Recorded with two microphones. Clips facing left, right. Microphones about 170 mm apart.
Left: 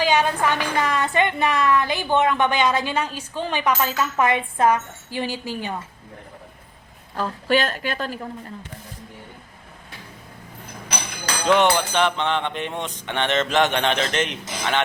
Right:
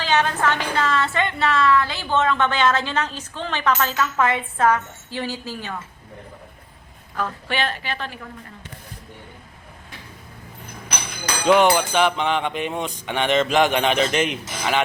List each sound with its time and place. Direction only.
0.0 s a woman's voice: 10° left (ahead or behind)
7.2 s a woman's voice: 40° left (ahead or behind)
11.4 s a sound: 10° right (ahead or behind)